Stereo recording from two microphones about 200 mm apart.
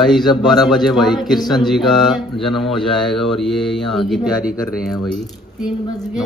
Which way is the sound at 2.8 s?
25° left (ahead or behind).